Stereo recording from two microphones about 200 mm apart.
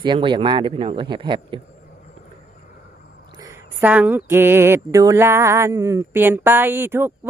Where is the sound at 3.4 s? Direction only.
10° right (ahead or behind).